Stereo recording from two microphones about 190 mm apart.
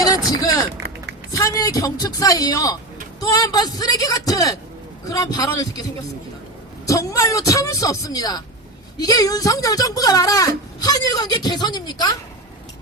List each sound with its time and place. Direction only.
0.0 s speech: 20° left (ahead or behind)
6.8 s a man's voice: 15° left (ahead or behind)